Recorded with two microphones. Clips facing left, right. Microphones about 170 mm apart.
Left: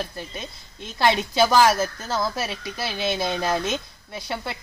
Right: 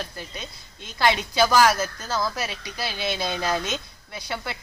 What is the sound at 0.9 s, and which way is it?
Speech, 25° left (ahead or behind).